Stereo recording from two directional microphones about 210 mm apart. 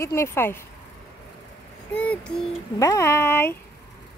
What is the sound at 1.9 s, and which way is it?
Speech, 5° left (ahead or behind).